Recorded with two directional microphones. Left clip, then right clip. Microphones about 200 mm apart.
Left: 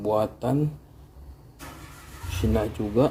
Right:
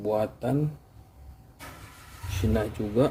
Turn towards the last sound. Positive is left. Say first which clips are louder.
# left 2 dB
turn(degrees=0)  # may be behind; listen again after turning